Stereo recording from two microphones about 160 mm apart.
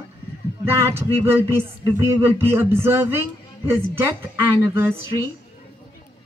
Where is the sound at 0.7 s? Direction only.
15° right (ahead or behind).